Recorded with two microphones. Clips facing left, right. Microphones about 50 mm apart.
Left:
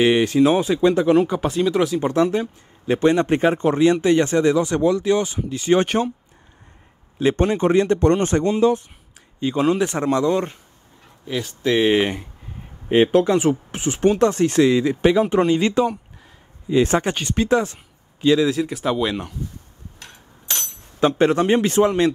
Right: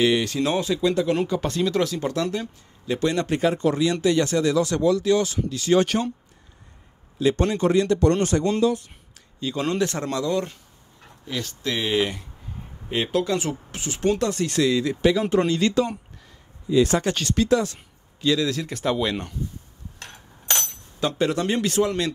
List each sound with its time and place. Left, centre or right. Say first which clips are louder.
0.0 s speech: left 6 dB; left
0.7 s speech: left 5 dB; left
1.4 s speech: left 4 dB; centre; by 6.0 s left
7.2 s speech: left 3 dB; left
9.6 s speech: left 5 dB; centre
18.7 s speech: left 2 dB; centre
20.0 s a sound: right 3 dB; right
21.0 s speech: left 6 dB; left